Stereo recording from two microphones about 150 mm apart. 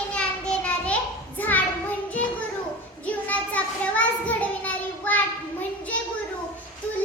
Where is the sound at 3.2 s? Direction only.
10° left (ahead or behind).